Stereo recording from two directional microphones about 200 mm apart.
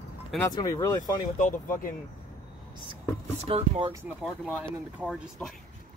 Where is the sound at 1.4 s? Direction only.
40° left (ahead or behind).